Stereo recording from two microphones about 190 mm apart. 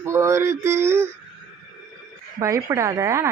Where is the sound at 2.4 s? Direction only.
15° right (ahead or behind).